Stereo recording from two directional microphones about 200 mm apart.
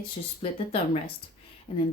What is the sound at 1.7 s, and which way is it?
Speech, 25° left (ahead or behind).